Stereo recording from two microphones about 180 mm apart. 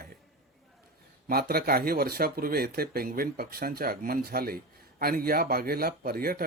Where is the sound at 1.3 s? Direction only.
60° right (ahead or behind).